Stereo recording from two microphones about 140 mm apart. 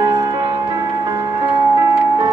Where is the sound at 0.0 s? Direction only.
30° right (ahead or behind).